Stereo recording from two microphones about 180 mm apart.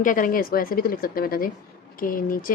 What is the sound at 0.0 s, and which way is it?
A woman's voice, 50° left (ahead or behind).